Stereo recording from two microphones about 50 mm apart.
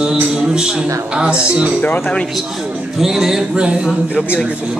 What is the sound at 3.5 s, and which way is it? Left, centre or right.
Speech, right.